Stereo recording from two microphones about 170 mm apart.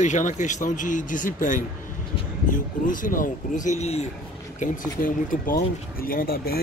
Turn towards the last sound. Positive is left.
turn(degrees=60)  # may be behind; listen again after turning